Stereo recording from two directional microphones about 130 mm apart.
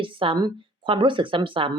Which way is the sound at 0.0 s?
40° right (ahead or behind).